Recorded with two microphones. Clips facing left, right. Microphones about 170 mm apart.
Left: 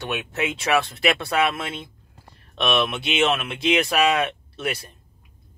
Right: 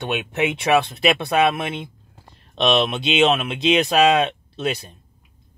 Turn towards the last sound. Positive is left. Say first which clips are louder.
# right 4 dB
turn(degrees=-20)  # may be behind; listen again after turning